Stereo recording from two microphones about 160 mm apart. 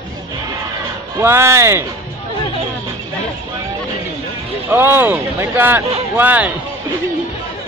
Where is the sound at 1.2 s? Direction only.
15° right (ahead or behind).